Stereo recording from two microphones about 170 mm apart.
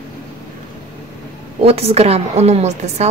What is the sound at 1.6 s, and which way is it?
A woman's voice, 35° right (ahead or behind).